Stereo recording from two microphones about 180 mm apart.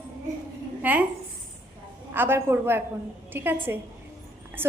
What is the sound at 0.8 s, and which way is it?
Speech, 10° right (ahead or behind).